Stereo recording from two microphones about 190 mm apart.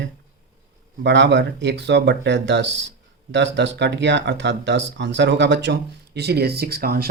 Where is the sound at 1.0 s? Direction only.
65° right (ahead or behind).